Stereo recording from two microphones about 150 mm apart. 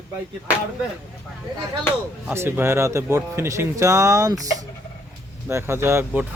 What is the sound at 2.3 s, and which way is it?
Speech, 15° right (ahead or behind).